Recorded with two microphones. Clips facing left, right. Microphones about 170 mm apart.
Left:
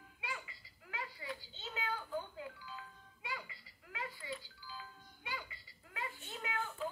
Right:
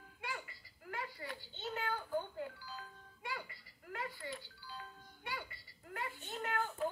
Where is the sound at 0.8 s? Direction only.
50° right (ahead or behind).